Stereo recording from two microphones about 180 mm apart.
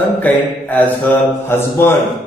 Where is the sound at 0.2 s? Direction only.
10° left (ahead or behind).